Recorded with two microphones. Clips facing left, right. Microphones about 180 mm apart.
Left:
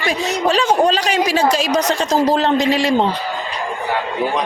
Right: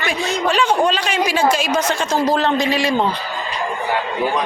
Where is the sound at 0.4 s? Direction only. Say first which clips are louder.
Left 2 dB; 35° left (ahead or behind).